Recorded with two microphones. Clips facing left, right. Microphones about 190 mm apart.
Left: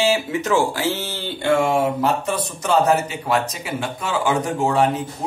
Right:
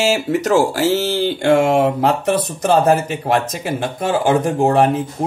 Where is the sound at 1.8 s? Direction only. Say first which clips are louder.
Right 4 dB; 60° right (ahead or behind).